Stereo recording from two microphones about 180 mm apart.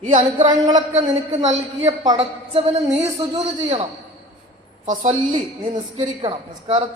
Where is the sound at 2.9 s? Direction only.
35° right (ahead or behind).